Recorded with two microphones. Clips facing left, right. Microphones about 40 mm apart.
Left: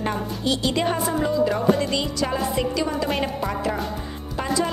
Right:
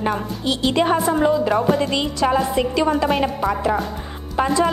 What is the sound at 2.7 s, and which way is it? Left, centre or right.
Speech, right.